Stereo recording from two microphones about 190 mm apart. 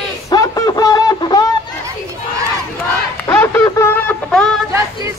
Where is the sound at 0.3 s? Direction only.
20° left (ahead or behind).